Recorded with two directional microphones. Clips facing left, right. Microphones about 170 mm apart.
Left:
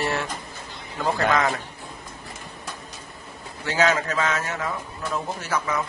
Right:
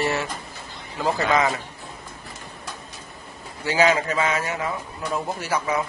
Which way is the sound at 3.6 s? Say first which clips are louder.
Right 2 dB; 10° right (ahead or behind).